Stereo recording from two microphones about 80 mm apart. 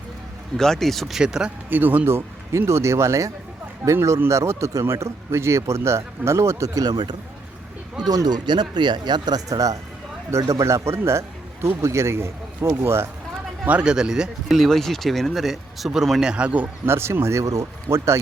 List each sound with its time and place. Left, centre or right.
0.5 s speech: centre
1.7 s speech: right
6.7 s speech: right
8.0 s speech: right
8.4 s speech: right
9.5 s a man's voice: right
13.7 s speech: centre
16.3 s speech: centre
16.8 s speech: right